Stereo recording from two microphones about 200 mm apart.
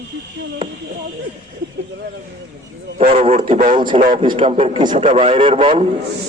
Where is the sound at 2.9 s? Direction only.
30° right (ahead or behind).